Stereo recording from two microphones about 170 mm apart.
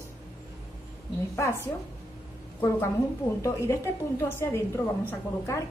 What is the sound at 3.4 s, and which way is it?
A woman's voice, 15° left (ahead or behind).